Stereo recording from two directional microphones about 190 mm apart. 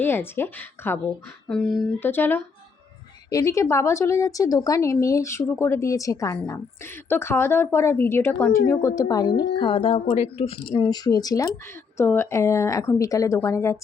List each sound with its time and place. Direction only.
0.0 s a woman's voice: 10° left (ahead or behind); by 10.8 s 30° left (ahead or behind)
10.8 s a woman's voice: 20° left (ahead or behind)